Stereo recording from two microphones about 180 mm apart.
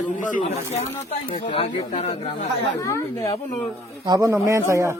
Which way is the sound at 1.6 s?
40° left (ahead or behind).